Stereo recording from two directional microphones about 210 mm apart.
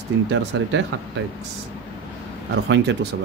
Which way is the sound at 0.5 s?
60° right (ahead or behind).